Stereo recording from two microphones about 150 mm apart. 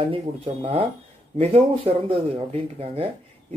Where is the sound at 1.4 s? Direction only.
40° right (ahead or behind).